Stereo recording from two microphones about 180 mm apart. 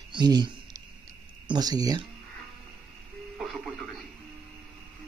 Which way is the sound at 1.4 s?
20° right (ahead or behind).